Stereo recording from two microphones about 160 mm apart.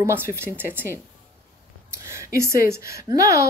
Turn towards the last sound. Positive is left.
turn(degrees=-20)  # may be behind; listen again after turning